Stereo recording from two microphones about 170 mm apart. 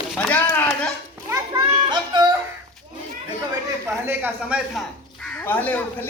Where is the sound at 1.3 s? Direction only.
25° right (ahead or behind).